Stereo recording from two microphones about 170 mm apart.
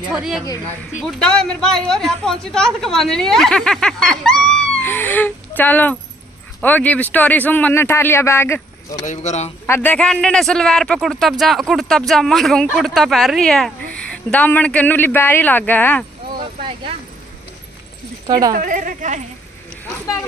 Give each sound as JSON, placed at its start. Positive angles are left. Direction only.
{"t": 0.1, "sound": "speech", "side_deg": -5}
{"t": 9.0, "sound": "speech", "side_deg": 45}
{"t": 9.7, "sound": "speech", "side_deg": 10}
{"t": 18.2, "sound": "speech", "side_deg": -25}
{"t": 18.5, "sound": "speech", "side_deg": -50}